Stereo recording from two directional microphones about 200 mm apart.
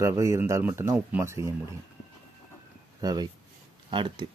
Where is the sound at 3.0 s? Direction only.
20° right (ahead or behind).